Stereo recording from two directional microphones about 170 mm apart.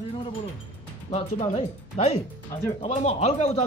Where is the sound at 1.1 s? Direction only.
40° left (ahead or behind).